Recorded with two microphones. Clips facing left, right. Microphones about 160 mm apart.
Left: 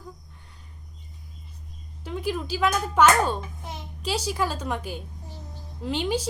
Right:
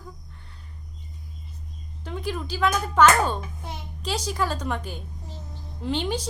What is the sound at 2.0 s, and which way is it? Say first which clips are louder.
Speech: left 2 dB; 5° left (ahead or behind).